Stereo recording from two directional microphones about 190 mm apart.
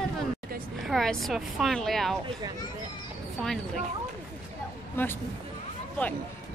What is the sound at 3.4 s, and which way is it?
Speech, centre (ahead or behind).